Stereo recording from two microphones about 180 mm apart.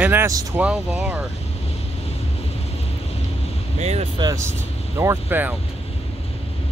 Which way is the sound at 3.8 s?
35° right (ahead or behind).